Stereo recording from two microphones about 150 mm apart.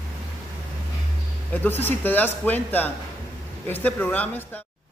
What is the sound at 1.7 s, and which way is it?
A man's voice, 10° left (ahead or behind).